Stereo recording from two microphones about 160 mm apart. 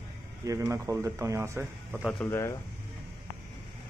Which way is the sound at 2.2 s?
15° left (ahead or behind).